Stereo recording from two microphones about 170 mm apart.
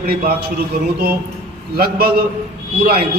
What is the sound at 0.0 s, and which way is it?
A man's voice, 65° right (ahead or behind).